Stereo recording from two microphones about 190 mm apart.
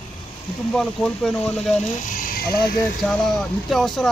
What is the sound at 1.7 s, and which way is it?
Speech, 45° left (ahead or behind).